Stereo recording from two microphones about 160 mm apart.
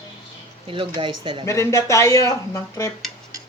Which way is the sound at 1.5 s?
20° left (ahead or behind).